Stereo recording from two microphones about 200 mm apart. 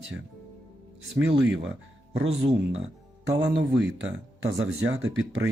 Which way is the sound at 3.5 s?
60° right (ahead or behind).